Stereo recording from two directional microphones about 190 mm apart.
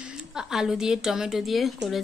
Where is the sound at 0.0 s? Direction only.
5° right (ahead or behind).